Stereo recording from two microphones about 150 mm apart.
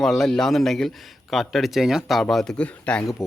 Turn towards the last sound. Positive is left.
turn(degrees=5)  # may be behind; listen again after turning